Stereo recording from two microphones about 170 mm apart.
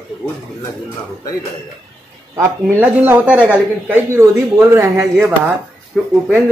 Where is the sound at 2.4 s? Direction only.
15° right (ahead or behind).